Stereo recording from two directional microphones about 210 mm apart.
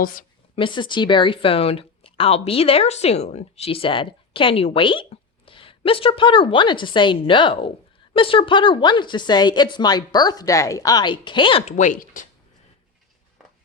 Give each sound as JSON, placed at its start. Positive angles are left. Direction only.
{"t": 0.0, "sound": "a woman's voice", "side_deg": 40}
{"t": 0.5, "sound": "speech", "side_deg": 25}